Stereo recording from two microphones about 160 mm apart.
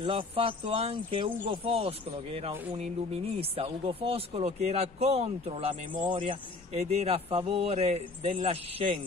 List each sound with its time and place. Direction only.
0.0 s speech: 35° right (ahead or behind)